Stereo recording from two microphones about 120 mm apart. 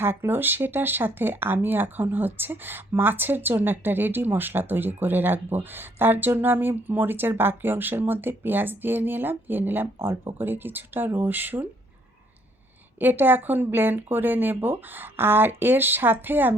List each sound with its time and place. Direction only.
0.0 s speech: 20° right (ahead or behind)
13.0 s speech: 15° right (ahead or behind)